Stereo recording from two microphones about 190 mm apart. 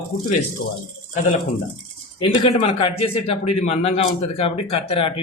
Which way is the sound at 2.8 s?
30° left (ahead or behind).